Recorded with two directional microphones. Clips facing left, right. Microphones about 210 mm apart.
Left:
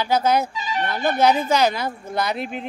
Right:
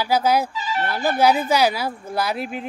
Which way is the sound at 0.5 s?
15° left (ahead or behind).